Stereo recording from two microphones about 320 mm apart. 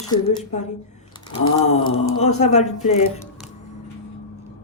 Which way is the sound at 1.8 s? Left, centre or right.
Left.